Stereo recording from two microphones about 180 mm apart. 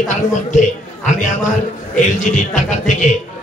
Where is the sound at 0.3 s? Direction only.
45° left (ahead or behind).